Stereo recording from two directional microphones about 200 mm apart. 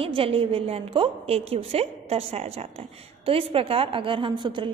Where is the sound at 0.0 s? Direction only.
25° right (ahead or behind).